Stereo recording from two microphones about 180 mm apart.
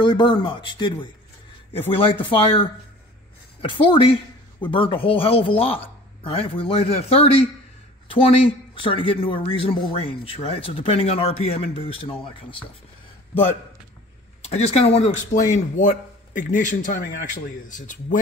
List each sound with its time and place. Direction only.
0.0 s a man's voice: 25° left (ahead or behind)
14.4 s a man's voice: 35° left (ahead or behind)